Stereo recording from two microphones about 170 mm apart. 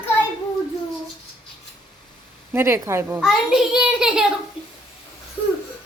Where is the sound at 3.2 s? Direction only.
5° right (ahead or behind).